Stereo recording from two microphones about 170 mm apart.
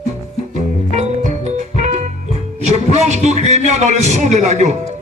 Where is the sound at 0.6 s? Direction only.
45° right (ahead or behind).